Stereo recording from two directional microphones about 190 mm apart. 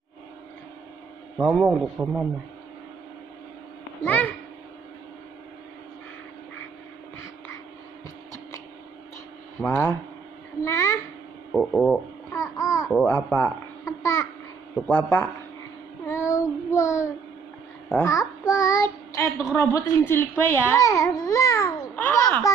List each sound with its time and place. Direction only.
1.4 s speech: centre (ahead or behind)
4.0 s a child's voice: 10° left (ahead or behind)
9.7 s a child's voice: 10° left (ahead or behind)
11.5 s speech: centre (ahead or behind)
12.3 s babbling: 15° left (ahead or behind)
13.0 s speech: 10° left (ahead or behind)
16.1 s child singing: 15° left (ahead or behind)
17.8 s a child's voice: 10° left (ahead or behind)
18.5 s child singing: 15° left (ahead or behind)
19.5 s speech: 10° left (ahead or behind)